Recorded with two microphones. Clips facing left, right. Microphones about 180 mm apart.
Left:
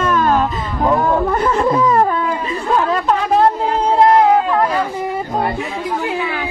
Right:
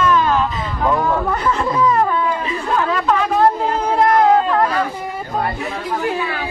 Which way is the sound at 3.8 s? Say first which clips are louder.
Left 6 dB; 30° left (ahead or behind).